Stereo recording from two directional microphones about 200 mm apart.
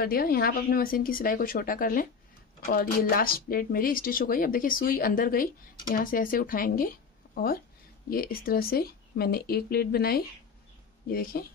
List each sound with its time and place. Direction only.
0.0 s speech: 45° left (ahead or behind)